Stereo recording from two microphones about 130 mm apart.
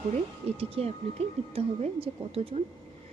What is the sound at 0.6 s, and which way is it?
A woman's voice, 50° right (ahead or behind).